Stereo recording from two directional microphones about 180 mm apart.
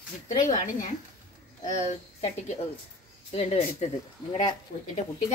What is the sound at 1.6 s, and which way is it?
Speech, 40° left (ahead or behind).